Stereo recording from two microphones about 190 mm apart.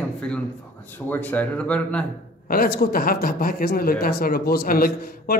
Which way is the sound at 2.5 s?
50° left (ahead or behind).